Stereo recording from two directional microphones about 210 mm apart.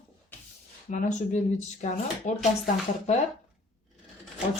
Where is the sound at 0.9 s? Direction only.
35° left (ahead or behind).